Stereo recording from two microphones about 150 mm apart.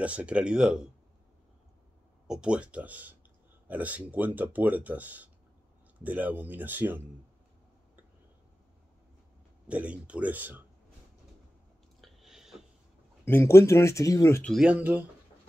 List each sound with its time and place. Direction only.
0.0 s speech: 10° right (ahead or behind)
2.2 s speech: 5° right (ahead or behind)
9.7 s speech: 10° right (ahead or behind)
12.0 s a sound: centre (ahead or behind)
13.2 s speech: 15° left (ahead or behind)
14.6 s speech: 10° right (ahead or behind)